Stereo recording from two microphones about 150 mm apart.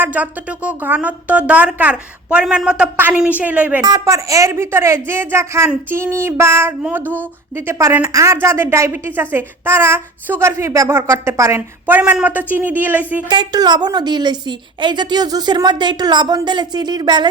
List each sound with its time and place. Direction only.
0.0 s a woman's voice: 10° right (ahead or behind)
3.8 s a woman's voice: 20° right (ahead or behind)
13.2 s a woman's voice: 30° right (ahead or behind)